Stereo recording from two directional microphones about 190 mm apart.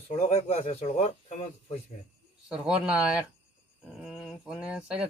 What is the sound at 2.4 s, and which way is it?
Speech, 5° right (ahead or behind).